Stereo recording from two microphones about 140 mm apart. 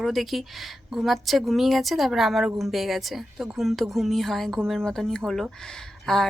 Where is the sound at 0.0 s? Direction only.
Centre (ahead or behind).